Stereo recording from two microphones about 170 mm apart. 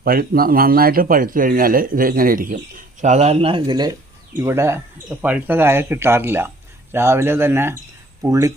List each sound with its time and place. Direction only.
0.0 s speech: 60° right (ahead or behind)
3.0 s speech: 40° right (ahead or behind); by 8.5 s 20° right (ahead or behind)